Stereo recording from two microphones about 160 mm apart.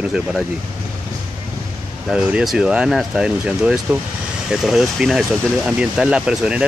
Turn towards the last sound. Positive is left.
turn(degrees=-5)  # may be behind; listen again after turning